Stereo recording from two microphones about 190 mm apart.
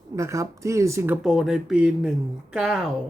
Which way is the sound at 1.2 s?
Centre (ahead or behind).